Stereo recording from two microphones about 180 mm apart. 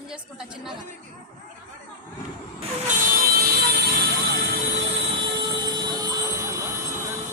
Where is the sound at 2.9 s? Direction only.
55° right (ahead or behind).